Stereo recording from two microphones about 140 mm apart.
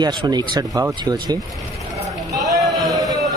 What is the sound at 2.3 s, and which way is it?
Run, 25° right (ahead or behind).